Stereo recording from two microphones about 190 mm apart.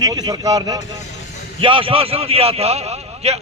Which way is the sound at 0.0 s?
20° right (ahead or behind).